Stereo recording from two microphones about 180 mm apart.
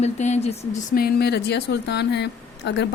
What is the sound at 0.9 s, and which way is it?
Speech, 60° left (ahead or behind).